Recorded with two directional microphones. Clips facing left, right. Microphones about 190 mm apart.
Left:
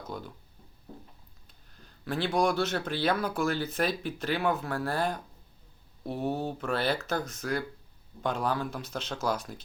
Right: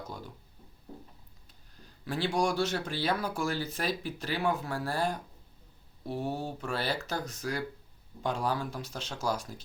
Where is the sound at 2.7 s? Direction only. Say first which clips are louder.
Left 2 dB; 55° left (ahead or behind).